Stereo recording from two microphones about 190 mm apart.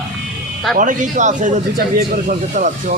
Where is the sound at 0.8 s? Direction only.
40° right (ahead or behind).